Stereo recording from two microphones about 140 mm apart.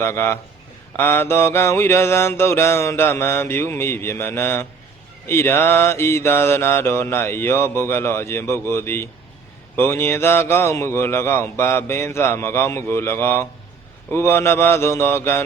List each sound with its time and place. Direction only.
0.0 s mantra: 15° left (ahead or behind)